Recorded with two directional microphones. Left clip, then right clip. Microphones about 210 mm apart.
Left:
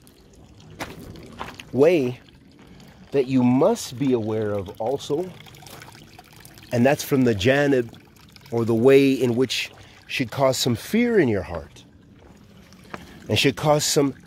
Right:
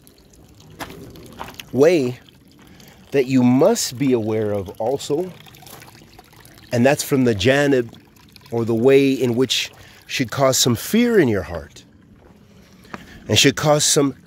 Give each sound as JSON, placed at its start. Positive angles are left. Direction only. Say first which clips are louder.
{"t": 0.8, "sound": "walk", "louder": "right 1 dB", "side_deg": -10}
{"t": 1.6, "sound": "speech", "louder": "right 3 dB", "side_deg": -20}
{"t": 5.2, "sound": "pour", "louder": "right 4 dB", "side_deg": -15}
{"t": 6.7, "sound": "speech", "louder": "right 3 dB", "side_deg": -15}
{"t": 8.5, "sound": "speech", "louder": "right 1 dB", "side_deg": -5}
{"t": 9.5, "sound": "speech", "louder": "right 5 dB", "side_deg": -20}
{"t": 12.9, "sound": "a sound", "louder": "right 6 dB", "side_deg": -30}
{"t": 13.7, "sound": "speech", "louder": "right 3 dB", "side_deg": -15}